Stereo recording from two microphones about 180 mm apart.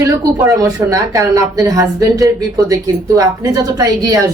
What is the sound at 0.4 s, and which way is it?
Speech, 20° right (ahead or behind).